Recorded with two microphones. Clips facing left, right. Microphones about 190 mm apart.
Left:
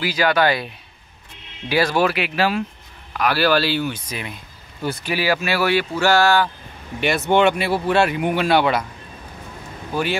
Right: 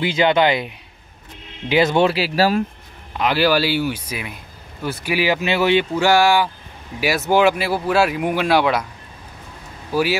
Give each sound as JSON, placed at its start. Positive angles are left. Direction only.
{"t": 0.0, "sound": "speech", "side_deg": -25}
{"t": 3.1, "sound": "speech", "side_deg": -20}
{"t": 9.9, "sound": "speech", "side_deg": -5}